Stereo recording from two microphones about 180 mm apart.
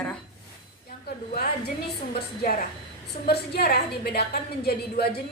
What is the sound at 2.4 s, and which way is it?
A woman's voice, 55° left (ahead or behind).